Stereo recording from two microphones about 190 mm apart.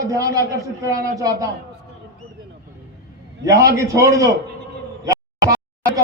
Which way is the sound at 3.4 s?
15° right (ahead or behind).